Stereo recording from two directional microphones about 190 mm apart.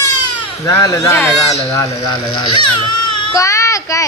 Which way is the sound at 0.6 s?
15° left (ahead or behind).